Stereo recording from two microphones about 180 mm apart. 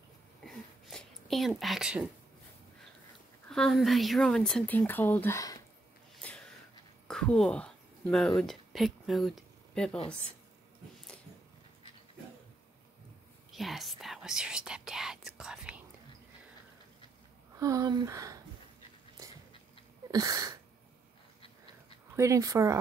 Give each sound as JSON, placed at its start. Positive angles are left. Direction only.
{"t": 0.4, "sound": "a sound", "side_deg": 0}
{"t": 3.4, "sound": "speech", "side_deg": 5}
{"t": 6.2, "sound": "gasp", "side_deg": 5}
{"t": 7.1, "sound": "speech", "side_deg": 5}
{"t": 13.5, "sound": "whispering", "side_deg": 0}
{"t": 17.6, "sound": "speech", "side_deg": -20}
{"t": 20.1, "sound": "sneeze", "side_deg": -20}
{"t": 22.1, "sound": "speech", "side_deg": -15}